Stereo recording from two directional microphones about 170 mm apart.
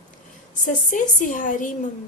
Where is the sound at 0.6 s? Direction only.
50° left (ahead or behind).